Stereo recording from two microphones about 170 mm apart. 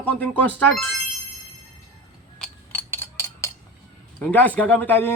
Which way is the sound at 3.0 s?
15° left (ahead or behind).